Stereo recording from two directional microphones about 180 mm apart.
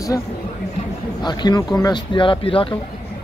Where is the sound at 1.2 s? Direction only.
25° left (ahead or behind).